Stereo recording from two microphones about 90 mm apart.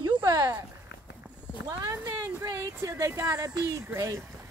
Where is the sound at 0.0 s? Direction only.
50° right (ahead or behind).